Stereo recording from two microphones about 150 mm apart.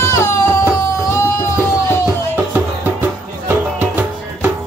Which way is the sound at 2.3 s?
10° right (ahead or behind).